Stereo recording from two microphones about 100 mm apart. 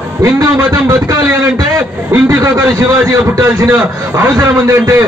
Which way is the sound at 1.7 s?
30° right (ahead or behind).